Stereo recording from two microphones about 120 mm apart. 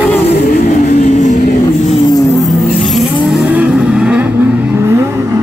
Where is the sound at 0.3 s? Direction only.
85° left.